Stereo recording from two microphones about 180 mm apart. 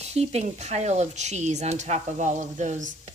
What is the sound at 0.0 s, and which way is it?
Speech, 35° right (ahead or behind).